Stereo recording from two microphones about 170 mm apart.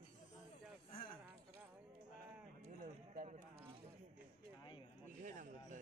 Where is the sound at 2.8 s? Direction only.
50° right (ahead or behind).